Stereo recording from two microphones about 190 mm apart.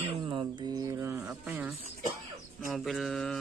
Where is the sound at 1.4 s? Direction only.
Centre (ahead or behind).